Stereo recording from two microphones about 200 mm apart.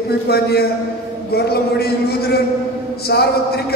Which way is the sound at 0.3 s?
50° left (ahead or behind).